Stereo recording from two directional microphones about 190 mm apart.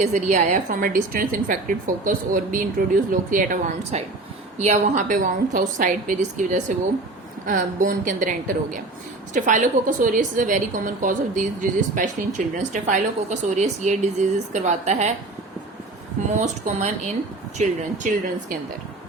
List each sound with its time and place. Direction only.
0.0 s a woman's voice: 40° right (ahead or behind)
16.4 s a woman's voice: 40° right (ahead or behind)